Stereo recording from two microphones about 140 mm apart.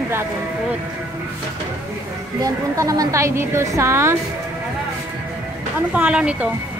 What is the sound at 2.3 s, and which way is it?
A woman's voice, 25° right (ahead or behind).